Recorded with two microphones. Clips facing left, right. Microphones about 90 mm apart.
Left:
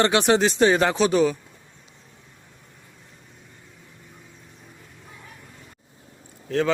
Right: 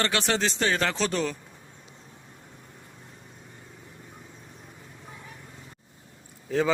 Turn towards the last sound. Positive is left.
turn(degrees=-5)  # may be behind; listen again after turning